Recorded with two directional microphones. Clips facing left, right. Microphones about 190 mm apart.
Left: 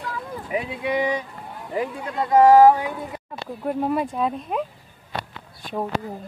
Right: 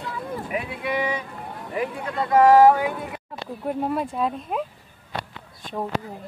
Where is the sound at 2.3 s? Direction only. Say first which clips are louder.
Left 1 dB; 20° left (ahead or behind).